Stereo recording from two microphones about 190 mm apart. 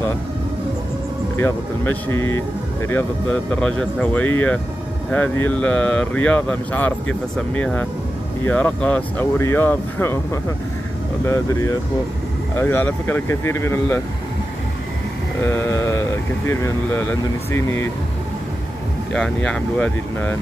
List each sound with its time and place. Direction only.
1.3 s speech: 10° left (ahead or behind)
15.4 s speech: 15° left (ahead or behind)
19.1 s speech: 5° left (ahead or behind)